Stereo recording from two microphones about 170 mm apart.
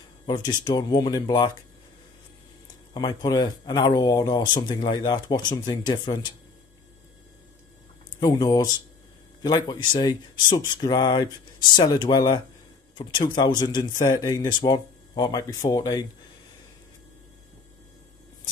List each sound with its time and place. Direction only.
0.3 s speech: 25° left (ahead or behind)
2.9 s speech: 25° left (ahead or behind)
8.2 s speech: 25° left (ahead or behind)